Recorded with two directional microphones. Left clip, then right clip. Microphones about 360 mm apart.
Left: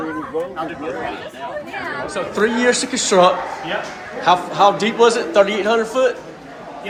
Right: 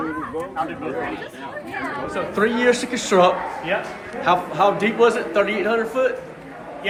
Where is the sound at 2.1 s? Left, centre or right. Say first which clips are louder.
Left 2 dB; centre.